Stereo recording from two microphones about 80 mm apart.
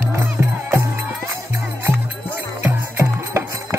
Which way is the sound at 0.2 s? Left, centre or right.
Right.